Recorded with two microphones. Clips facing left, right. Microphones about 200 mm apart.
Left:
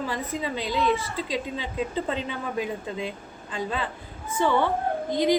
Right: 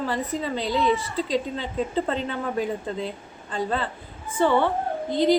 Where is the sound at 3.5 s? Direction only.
10° left (ahead or behind).